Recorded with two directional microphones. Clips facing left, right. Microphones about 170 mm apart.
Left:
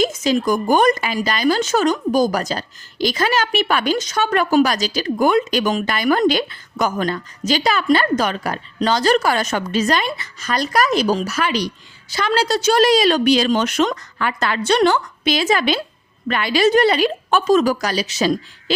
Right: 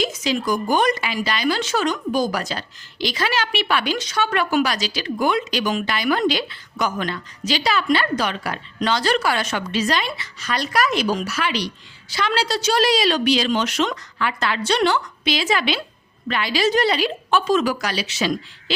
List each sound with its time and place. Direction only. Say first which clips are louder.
0.0 s a woman's voice: left 5 dB; 45° left (ahead or behind)